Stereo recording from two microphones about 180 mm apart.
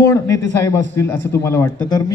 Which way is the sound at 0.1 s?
20° left (ahead or behind).